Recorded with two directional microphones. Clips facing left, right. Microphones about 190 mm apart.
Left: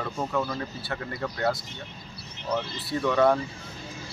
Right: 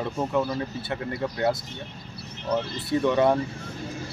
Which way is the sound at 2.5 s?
20° right (ahead or behind).